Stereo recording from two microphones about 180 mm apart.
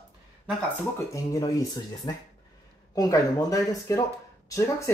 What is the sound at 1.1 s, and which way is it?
Speech, 20° left (ahead or behind).